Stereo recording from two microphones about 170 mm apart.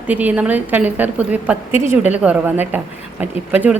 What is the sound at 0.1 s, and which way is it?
A woman's voice, 10° right (ahead or behind).